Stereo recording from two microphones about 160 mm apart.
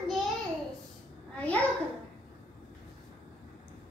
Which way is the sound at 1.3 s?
10° left (ahead or behind).